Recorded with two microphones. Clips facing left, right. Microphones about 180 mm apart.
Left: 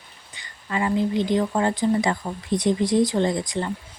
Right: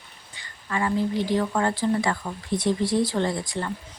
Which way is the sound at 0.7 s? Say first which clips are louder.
Left 2 dB; 20° left (ahead or behind).